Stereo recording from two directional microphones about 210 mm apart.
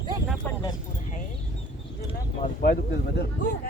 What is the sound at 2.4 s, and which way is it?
Speech, 45° left (ahead or behind).